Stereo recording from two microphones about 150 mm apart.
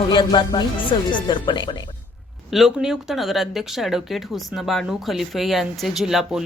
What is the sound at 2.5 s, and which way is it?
Speech, centre (ahead or behind).